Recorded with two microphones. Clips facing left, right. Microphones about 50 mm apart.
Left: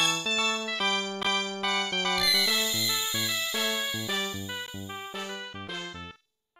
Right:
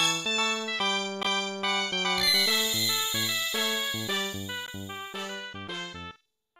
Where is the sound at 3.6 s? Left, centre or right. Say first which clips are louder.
Left 1 dB; left.